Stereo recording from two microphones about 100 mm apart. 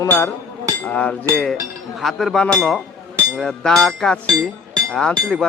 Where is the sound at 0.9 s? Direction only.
15° left (ahead or behind).